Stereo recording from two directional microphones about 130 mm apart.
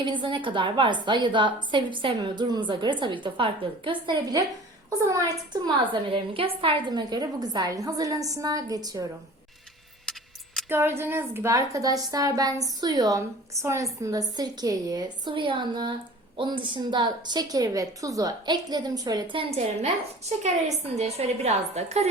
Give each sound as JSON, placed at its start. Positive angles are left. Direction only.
{"t": 0.0, "sound": "a woman's voice", "side_deg": -40}
{"t": 5.8, "sound": "a woman's voice", "side_deg": -40}
{"t": 10.1, "sound": "a sound", "side_deg": 0}
{"t": 10.7, "sound": "a woman's voice", "side_deg": -20}